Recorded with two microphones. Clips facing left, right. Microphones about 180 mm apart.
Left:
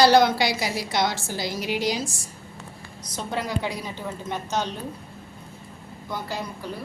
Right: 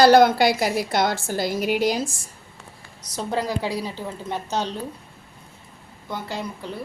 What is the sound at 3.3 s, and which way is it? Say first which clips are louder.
A woman's voice: right 3 dB; 30° right (ahead or behind).